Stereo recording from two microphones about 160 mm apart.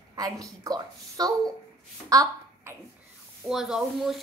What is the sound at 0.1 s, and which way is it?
A woman's voice, 25° right (ahead or behind).